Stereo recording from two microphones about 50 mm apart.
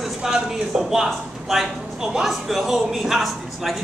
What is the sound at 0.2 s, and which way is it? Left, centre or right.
A man's voice, centre.